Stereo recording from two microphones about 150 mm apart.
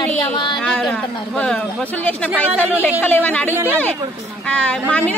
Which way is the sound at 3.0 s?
10° left (ahead or behind).